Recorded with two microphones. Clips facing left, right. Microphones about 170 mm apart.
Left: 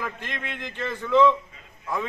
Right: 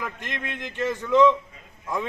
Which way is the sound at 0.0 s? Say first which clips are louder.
Even; 15° right (ahead or behind).